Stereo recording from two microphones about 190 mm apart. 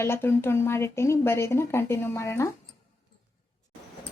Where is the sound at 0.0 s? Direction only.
10° left (ahead or behind).